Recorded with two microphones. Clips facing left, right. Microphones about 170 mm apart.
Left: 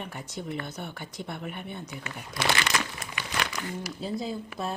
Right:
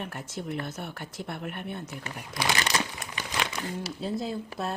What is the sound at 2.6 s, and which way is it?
Crumpling, 35° right (ahead or behind).